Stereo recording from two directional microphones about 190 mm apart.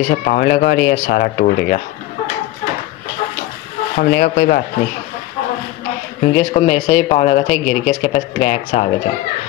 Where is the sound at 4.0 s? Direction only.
55° left (ahead or behind).